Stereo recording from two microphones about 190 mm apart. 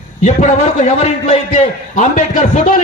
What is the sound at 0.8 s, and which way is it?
A man's voice, 35° left (ahead or behind).